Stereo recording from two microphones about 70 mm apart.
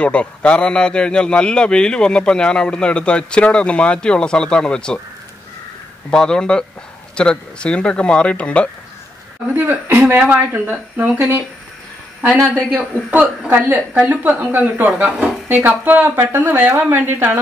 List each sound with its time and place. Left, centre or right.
0.0 s a man's voice: centre
6.0 s a man's voice: centre
9.6 s speech: right
13.5 s speech: right